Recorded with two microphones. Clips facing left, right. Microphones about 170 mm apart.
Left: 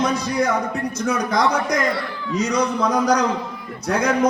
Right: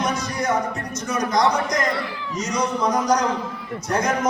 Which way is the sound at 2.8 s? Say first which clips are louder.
Even; 60° left (ahead or behind).